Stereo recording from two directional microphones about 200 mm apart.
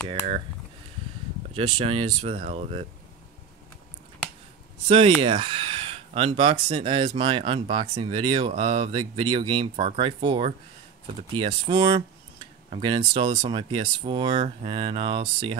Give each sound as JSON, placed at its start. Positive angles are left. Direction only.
{"t": 1.8, "sound": "speech", "side_deg": -25}
{"t": 4.8, "sound": "speech", "side_deg": -30}